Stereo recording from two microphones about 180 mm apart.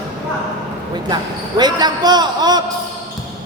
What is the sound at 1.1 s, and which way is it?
Speech, 25° right (ahead or behind).